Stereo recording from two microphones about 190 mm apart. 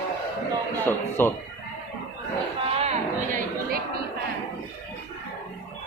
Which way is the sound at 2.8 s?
35° right (ahead or behind).